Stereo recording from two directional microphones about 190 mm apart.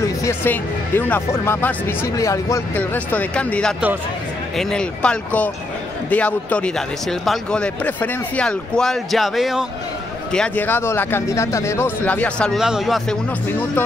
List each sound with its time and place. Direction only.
0.0 s speech: 15° left (ahead or behind)